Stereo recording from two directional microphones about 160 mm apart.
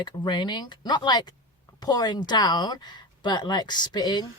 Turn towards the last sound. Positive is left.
turn(degrees=25)  # may be behind; listen again after turning